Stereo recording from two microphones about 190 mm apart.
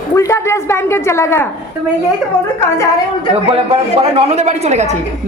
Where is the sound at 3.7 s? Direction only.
35° right (ahead or behind).